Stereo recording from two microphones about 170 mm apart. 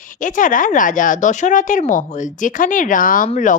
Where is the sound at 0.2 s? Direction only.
50° left (ahead or behind).